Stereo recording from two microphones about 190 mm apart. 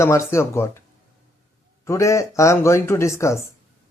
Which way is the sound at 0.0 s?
15° left (ahead or behind).